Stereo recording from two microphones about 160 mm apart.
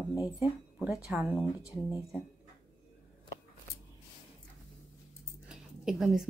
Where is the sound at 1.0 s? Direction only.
5° right (ahead or behind).